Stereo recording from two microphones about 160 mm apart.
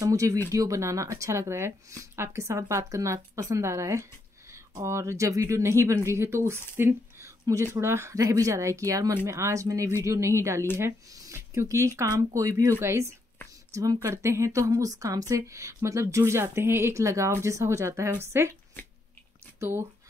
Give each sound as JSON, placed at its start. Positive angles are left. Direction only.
{"t": 0.0, "sound": "speech", "side_deg": -20}
{"t": 6.8, "sound": "a sound", "side_deg": -15}
{"t": 7.7, "sound": "a woman's voice", "side_deg": -15}
{"t": 19.6, "sound": "a woman's voice", "side_deg": -15}